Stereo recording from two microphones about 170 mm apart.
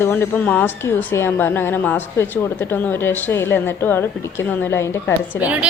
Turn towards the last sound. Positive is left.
turn(degrees=15)  # may be behind; listen again after turning